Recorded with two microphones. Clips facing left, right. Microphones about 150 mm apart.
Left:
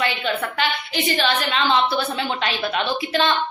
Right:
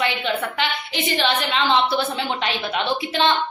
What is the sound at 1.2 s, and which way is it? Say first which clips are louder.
A woman's voice: right 1 dB; 20° right (ahead or behind).